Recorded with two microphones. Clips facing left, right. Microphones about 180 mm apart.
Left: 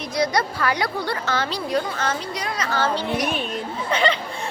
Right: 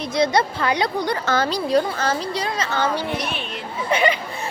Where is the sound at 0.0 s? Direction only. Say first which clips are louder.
Right 3 dB; 25° right (ahead or behind).